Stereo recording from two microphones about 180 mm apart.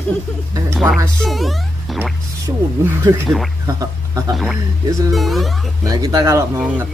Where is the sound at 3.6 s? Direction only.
20° right (ahead or behind).